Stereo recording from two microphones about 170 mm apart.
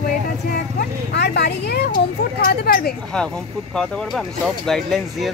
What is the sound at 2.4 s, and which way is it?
Speech, 60° left (ahead or behind).